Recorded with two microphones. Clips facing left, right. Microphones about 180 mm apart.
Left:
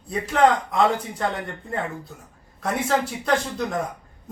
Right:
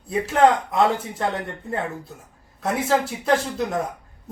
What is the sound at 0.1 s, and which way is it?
Speech, centre (ahead or behind).